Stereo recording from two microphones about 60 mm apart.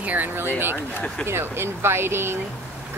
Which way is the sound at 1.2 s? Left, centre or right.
Right.